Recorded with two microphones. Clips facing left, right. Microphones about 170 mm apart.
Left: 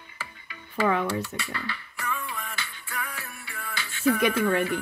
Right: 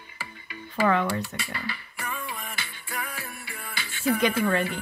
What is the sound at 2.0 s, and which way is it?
Music, 25° right (ahead or behind).